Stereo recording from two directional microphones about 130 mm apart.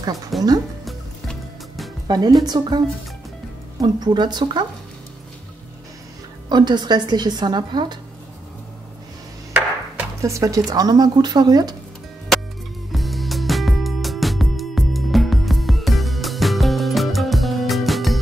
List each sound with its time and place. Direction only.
0.3 s speech: centre (ahead or behind)
2.0 s a woman's voice: 30° right (ahead or behind)
3.8 s a woman's voice: 35° right (ahead or behind)
6.5 s a woman's voice: 35° right (ahead or behind)
10.2 s a woman's voice: 25° right (ahead or behind)
12.9 s music: centre (ahead or behind)